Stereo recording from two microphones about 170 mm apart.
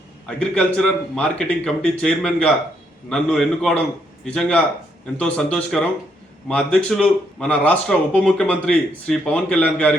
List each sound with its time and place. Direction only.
0.3 s speech: 5° left (ahead or behind)